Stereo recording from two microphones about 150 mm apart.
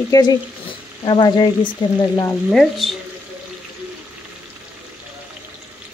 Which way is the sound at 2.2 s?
10° left (ahead or behind).